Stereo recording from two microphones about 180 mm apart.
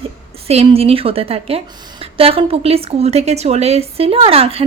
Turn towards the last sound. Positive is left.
turn(degrees=-30)  # may be behind; listen again after turning